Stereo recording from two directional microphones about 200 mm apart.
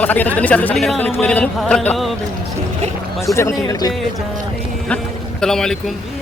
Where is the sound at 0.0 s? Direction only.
10° left (ahead or behind).